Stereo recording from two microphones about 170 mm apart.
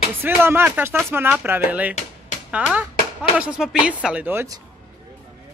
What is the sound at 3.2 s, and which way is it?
Speech, 5° right (ahead or behind).